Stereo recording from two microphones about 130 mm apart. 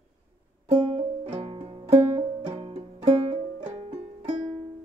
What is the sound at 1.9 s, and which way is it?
Music, 55° right (ahead or behind).